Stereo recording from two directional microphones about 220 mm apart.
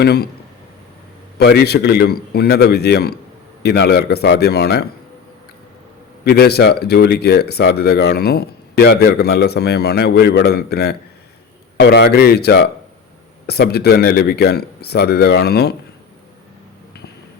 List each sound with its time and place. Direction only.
0.0 s speech: 45° left (ahead or behind)
1.4 s speech: 50° left (ahead or behind)
6.2 s speech: 45° left (ahead or behind)